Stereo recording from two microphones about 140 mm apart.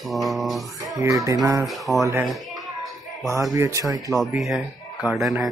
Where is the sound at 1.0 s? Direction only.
25° right (ahead or behind).